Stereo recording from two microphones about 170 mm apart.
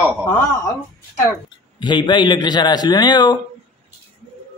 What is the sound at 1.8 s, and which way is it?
A man's voice, 25° left (ahead or behind).